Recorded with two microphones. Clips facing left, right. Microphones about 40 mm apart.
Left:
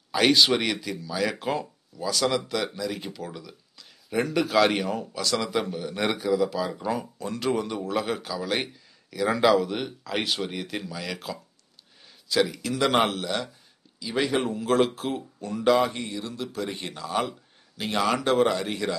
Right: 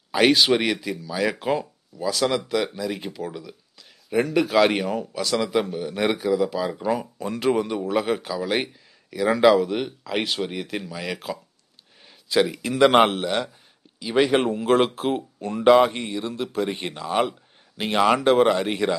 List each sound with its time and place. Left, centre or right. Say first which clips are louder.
0.1 s speech: right 3 dB; centre